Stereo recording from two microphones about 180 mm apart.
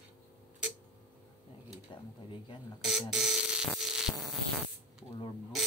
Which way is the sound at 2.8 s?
Centre (ahead or behind).